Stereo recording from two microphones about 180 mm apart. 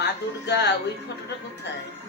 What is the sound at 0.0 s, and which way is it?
Speech, 70° left (ahead or behind).